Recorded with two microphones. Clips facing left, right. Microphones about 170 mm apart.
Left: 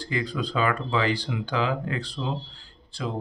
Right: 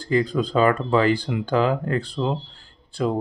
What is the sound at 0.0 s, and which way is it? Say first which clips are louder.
Speech: right 8 dB; 45° right (ahead or behind).